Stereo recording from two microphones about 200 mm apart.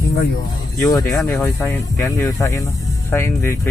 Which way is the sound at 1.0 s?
Centre (ahead or behind).